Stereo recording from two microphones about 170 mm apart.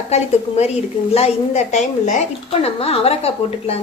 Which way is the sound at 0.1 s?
40° left (ahead or behind).